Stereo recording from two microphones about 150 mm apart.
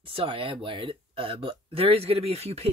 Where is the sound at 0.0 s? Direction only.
35° right (ahead or behind).